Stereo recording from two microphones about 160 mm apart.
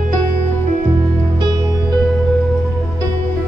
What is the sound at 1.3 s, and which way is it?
Music, 30° right (ahead or behind).